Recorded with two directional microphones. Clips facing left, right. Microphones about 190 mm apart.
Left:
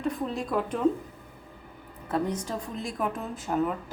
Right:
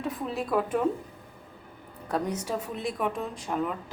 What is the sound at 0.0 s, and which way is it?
Speech, centre (ahead or behind).